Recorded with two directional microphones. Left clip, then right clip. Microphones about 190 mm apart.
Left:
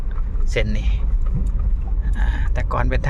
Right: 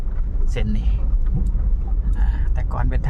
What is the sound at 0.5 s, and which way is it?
Speech, 15° left (ahead or behind).